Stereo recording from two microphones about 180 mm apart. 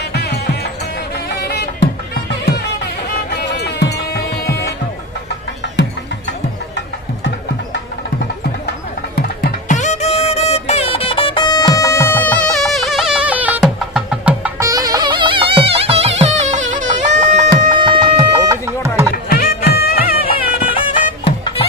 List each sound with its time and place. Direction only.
0.1 s music: 65° left (ahead or behind)
3.3 s music: 65° left (ahead or behind)
9.1 s music: 55° left (ahead or behind); by 14.7 s 10° right (ahead or behind)
14.7 s music: 20° right (ahead or behind)
18.4 s music: 15° right (ahead or behind)
19.2 s music: 55° left (ahead or behind)
21.2 s bagpipes: 30° left (ahead or behind)